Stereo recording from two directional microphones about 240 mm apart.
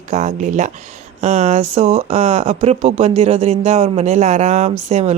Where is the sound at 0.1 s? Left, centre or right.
Right.